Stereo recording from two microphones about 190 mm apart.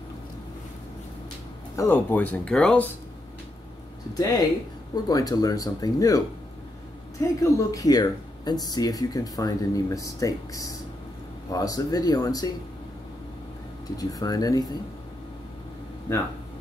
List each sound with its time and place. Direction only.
1.8 s speech: 10° left (ahead or behind)
4.1 s speech: 20° left (ahead or behind)
13.9 s speech: 20° left (ahead or behind)